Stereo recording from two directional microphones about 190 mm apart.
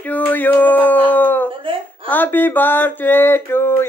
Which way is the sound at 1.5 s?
30° right (ahead or behind).